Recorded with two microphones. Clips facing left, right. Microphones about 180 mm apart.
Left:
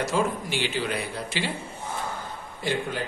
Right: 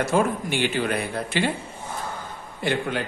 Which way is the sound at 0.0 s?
55° right (ahead or behind).